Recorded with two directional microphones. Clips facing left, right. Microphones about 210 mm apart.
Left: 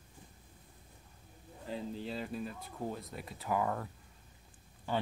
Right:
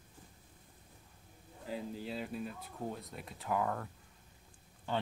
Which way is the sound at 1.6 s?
5° right (ahead or behind).